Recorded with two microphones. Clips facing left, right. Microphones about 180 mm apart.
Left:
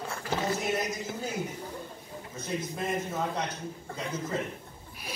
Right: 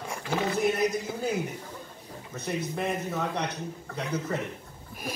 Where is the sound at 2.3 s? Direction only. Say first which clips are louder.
Right 3 dB; 65° right (ahead or behind).